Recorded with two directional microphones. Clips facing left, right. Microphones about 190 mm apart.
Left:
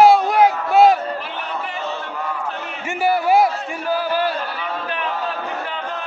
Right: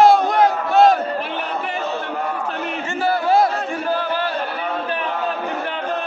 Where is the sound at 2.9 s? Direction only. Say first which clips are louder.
Left 2 dB; 10° left (ahead or behind).